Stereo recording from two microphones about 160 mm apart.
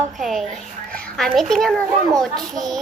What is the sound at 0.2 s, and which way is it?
A woman's voice, centre (ahead or behind).